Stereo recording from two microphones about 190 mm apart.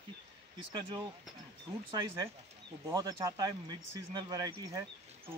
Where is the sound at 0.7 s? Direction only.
25° right (ahead or behind).